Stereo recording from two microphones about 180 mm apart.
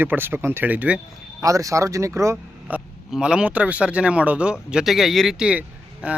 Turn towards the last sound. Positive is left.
turn(degrees=-5)  # may be behind; listen again after turning